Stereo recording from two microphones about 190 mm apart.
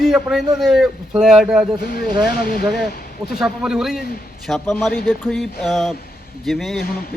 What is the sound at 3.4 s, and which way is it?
A man's voice, 5° right (ahead or behind).